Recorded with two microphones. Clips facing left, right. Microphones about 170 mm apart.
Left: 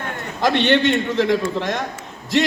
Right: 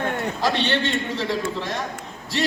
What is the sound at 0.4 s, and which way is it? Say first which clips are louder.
A man's voice: left 7 dB; 65° left (ahead or behind).